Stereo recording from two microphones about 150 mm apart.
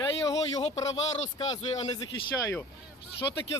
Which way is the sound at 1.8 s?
25° left (ahead or behind).